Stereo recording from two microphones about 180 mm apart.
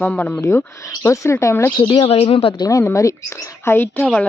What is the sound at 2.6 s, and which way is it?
Speech, 15° left (ahead or behind).